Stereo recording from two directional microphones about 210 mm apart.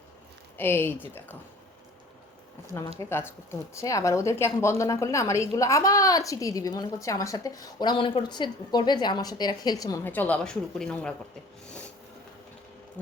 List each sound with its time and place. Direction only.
0.5 s a woman's voice: 10° left (ahead or behind)
3.0 s a woman's voice: 10° left (ahead or behind)